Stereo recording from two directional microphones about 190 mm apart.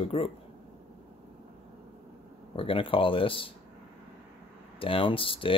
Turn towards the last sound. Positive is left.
turn(degrees=30)  # may be behind; listen again after turning